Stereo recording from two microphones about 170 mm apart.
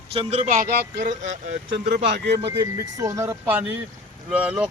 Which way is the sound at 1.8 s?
65° right (ahead or behind).